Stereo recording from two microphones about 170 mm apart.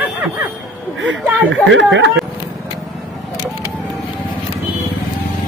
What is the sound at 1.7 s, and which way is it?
Speech, 90° right.